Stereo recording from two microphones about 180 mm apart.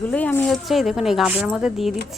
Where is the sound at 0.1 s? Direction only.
10° left (ahead or behind).